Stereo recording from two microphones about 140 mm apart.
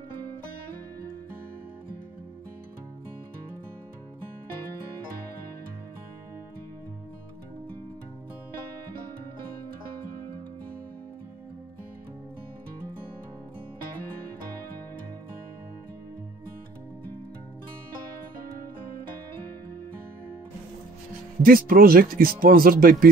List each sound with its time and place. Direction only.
21.4 s speech: 90° right